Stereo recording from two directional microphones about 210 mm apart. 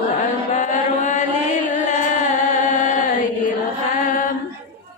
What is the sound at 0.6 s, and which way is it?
Chant, 35° left (ahead or behind).